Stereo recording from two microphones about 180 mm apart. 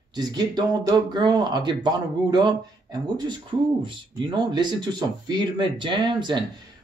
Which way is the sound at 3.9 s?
25° right (ahead or behind).